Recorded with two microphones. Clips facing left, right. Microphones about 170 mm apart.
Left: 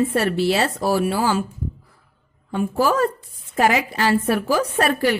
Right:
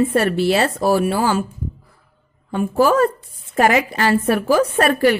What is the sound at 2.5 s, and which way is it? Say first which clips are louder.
A woman's voice: right 4 dB; 50° right (ahead or behind).